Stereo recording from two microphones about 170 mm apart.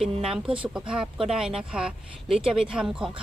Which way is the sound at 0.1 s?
35° right (ahead or behind).